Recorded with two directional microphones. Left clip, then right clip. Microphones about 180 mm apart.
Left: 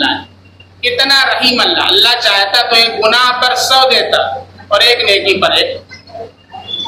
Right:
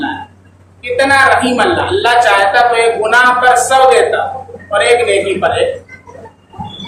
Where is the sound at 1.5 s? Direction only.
5° right (ahead or behind).